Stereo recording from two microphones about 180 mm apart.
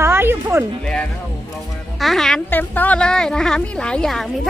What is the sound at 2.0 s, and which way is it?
Speech, centre (ahead or behind).